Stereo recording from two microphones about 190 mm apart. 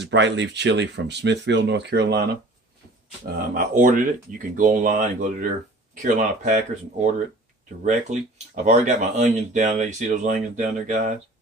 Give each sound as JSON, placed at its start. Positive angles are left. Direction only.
{"t": 0.0, "sound": "speech", "side_deg": -70}
{"t": 3.3, "sound": "speech", "side_deg": -50}
{"t": 7.8, "sound": "speech", "side_deg": -40}